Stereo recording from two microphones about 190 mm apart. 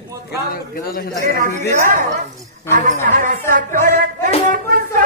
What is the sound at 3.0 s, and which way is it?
Music, 45° right (ahead or behind).